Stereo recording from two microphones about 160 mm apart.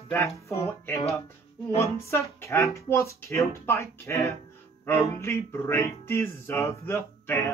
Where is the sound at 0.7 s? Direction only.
15° left (ahead or behind).